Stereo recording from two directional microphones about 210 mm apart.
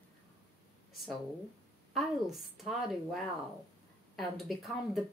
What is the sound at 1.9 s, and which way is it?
Speech, centre (ahead or behind).